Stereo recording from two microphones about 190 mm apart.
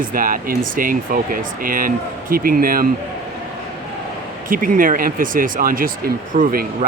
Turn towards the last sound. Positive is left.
turn(degrees=-50)  # may be behind; listen again after turning